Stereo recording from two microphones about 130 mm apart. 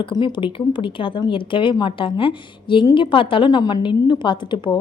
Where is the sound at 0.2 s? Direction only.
35° left (ahead or behind).